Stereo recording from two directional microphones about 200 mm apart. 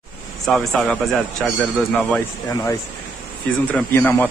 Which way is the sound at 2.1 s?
15° left (ahead or behind).